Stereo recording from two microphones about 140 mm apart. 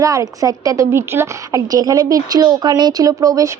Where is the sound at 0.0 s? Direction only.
25° right (ahead or behind).